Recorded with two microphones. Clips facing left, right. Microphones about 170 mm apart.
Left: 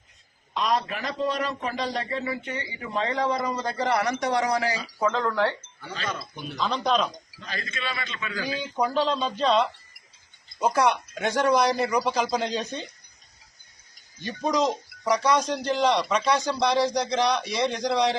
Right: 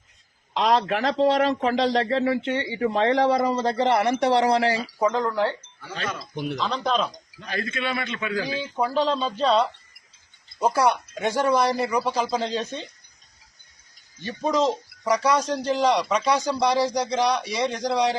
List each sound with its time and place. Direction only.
0.5 s a man's voice: 80° right
3.4 s speech: 25° right (ahead or behind)
4.9 s a man's voice: 15° right (ahead or behind)
6.3 s a man's voice: 80° right
6.6 s a man's voice: centre (ahead or behind)
7.4 s a man's voice: 60° right (ahead or behind)
8.4 s speech: 25° right (ahead or behind)
8.6 s a man's voice: 5° right (ahead or behind)
10.7 s a man's voice: 10° right (ahead or behind)
14.2 s a man's voice: 5° right (ahead or behind)